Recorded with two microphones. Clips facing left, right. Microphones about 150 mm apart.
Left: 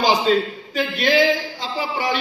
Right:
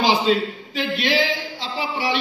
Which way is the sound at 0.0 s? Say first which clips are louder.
Left 1 dB; 45° left (ahead or behind).